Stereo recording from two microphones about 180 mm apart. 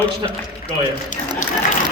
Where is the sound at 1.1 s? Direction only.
45° left (ahead or behind).